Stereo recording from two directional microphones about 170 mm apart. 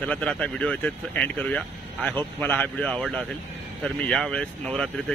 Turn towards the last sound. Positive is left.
turn(degrees=5)  # may be behind; listen again after turning